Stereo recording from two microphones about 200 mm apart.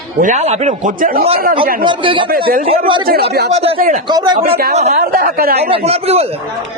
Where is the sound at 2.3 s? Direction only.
45° right (ahead or behind).